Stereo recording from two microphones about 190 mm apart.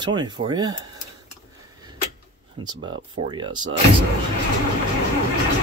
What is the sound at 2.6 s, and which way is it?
Speech, 20° right (ahead or behind).